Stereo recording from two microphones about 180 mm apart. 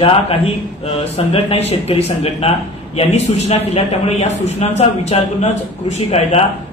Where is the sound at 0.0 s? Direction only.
30° left (ahead or behind).